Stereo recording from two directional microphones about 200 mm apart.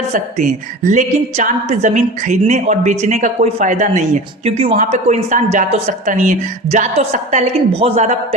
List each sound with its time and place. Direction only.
0.1 s a woman's voice: 40° right (ahead or behind)